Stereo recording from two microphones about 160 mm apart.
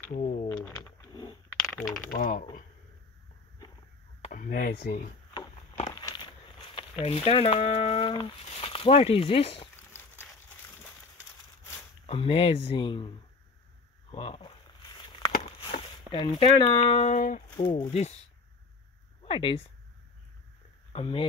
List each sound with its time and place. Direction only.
0.5 s a sound: 10° left (ahead or behind)
1.1 s a sound: 25° left (ahead or behind)
1.5 s a sound: 10° left (ahead or behind)
2.0 s speech: 60° left (ahead or behind)
4.2 s speech: 55° left (ahead or behind); by 5.0 s 80° left
5.3 s walk: 25° left (ahead or behind)
7.0 s speech: 40° left (ahead or behind)
12.1 s speech: 35° left (ahead or behind)
14.1 s a sound: 35° left (ahead or behind)
16.1 s speech: 30° left (ahead or behind)
19.2 s speech: 35° left (ahead or behind)
20.9 s speech: 35° left (ahead or behind)